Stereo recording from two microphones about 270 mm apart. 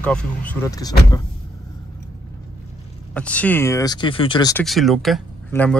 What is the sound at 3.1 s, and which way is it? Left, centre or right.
Speech, centre.